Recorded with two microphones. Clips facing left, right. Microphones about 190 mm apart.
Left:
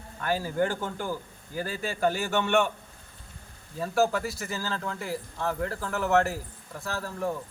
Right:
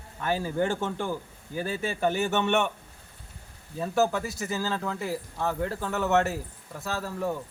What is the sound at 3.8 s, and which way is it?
Speech, 20° right (ahead or behind).